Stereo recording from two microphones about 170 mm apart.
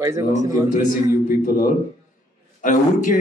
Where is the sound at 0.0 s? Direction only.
15° right (ahead or behind).